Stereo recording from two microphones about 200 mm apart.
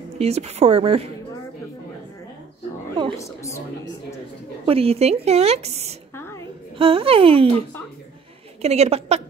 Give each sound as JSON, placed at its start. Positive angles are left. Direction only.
{"t": 0.2, "sound": "a woman's voice", "side_deg": -30}
{"t": 3.2, "sound": "a woman's voice", "side_deg": 15}
{"t": 4.6, "sound": "a woman's voice", "side_deg": -30}
{"t": 6.1, "sound": "a sound", "side_deg": 15}
{"t": 6.8, "sound": "speech", "side_deg": -25}
{"t": 8.6, "sound": "a woman's voice", "side_deg": -30}